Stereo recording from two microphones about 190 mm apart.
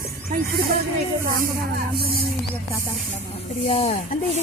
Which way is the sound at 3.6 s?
35° left (ahead or behind).